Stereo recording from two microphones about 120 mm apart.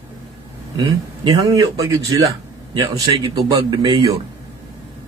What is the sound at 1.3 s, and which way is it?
Speech, 30° right (ahead or behind).